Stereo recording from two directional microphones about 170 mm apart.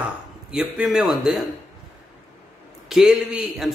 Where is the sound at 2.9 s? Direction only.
5° right (ahead or behind).